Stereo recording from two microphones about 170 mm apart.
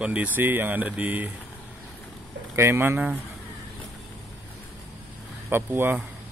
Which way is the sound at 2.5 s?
15° right (ahead or behind).